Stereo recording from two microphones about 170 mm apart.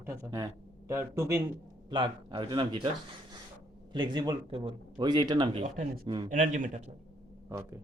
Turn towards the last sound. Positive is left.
turn(degrees=-15)  # may be behind; listen again after turning